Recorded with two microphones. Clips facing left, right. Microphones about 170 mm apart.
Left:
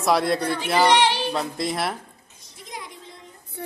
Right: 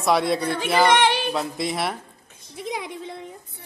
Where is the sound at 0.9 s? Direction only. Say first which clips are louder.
Left 1 dB; 50° right (ahead or behind).